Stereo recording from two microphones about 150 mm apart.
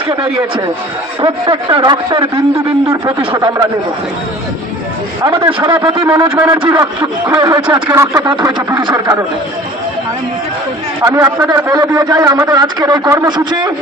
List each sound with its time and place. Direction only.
1.2 s a man's voice: 35° right (ahead or behind)
5.2 s speech: 35° right (ahead or behind)
7.3 s a man's voice: 20° right (ahead or behind)
8.2 s a man's voice: 30° right (ahead or behind)
11.0 s a man's voice: 20° right (ahead or behind)